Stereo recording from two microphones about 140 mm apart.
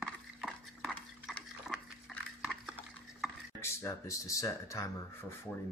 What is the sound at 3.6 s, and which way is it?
Speech, 20° left (ahead or behind).